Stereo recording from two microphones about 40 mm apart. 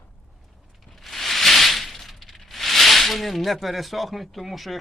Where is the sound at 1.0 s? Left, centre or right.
Centre.